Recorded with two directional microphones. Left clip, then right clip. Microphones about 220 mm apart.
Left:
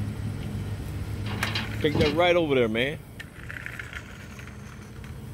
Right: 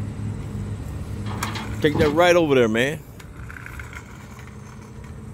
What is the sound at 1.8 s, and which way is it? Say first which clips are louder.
Speech: right 6 dB; 25° right (ahead or behind).